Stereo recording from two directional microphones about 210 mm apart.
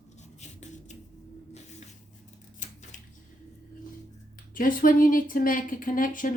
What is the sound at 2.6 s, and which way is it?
Scissors, 35° left (ahead or behind).